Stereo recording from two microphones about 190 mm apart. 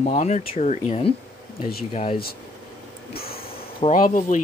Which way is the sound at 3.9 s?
45° left (ahead or behind).